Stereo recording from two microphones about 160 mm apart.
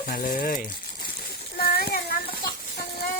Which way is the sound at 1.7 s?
80° left.